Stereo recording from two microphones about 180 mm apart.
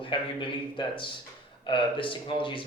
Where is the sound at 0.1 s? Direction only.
25° left (ahead or behind).